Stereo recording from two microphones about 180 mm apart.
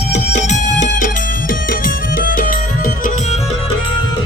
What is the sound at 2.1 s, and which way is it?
Music, 50° left (ahead or behind).